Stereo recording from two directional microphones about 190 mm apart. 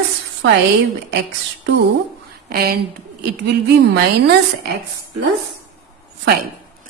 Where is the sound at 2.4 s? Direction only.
55° right (ahead or behind).